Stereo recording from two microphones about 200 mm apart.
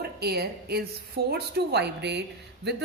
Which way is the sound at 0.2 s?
55° right (ahead or behind).